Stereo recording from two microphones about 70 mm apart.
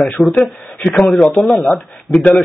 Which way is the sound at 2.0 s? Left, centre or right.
Centre.